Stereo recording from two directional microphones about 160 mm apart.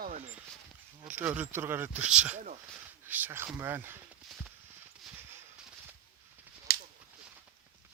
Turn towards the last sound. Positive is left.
turn(degrees=65)  # may be behind; listen again after turning